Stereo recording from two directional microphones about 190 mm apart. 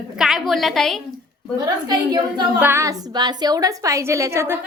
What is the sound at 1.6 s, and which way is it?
A woman's voice, 20° right (ahead or behind).